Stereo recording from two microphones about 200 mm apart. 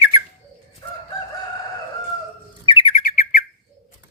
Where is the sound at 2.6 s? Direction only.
25° left (ahead or behind).